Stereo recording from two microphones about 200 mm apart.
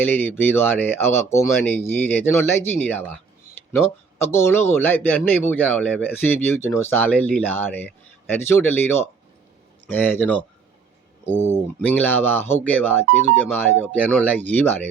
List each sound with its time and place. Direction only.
0.0 s speech: 10° left (ahead or behind)
11.9 s speech: 10° left (ahead or behind)